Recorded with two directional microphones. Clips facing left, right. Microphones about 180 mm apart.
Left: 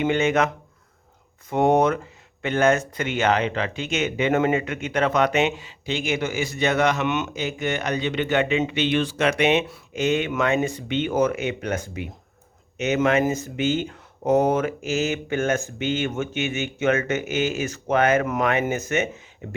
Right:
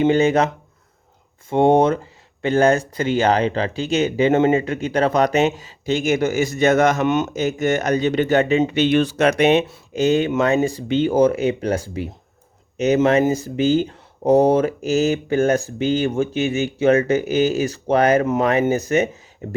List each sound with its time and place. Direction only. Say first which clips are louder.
0.0 s speech: right 5 dB; 35° right (ahead or behind)